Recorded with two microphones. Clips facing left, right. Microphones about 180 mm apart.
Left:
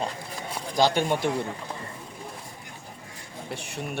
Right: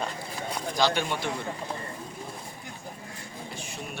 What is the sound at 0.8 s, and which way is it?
Speech, 45° left (ahead or behind).